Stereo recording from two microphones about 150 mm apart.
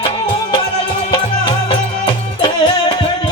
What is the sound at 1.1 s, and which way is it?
Music, 30° left (ahead or behind).